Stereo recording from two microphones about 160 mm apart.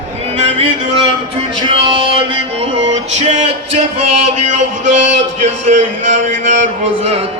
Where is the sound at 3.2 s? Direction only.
45° right (ahead or behind).